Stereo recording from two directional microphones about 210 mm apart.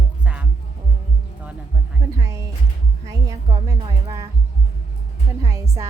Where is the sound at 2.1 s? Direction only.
15° right (ahead or behind).